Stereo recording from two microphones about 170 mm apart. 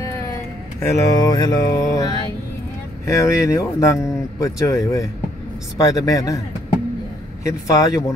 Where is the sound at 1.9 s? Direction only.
20° left (ahead or behind).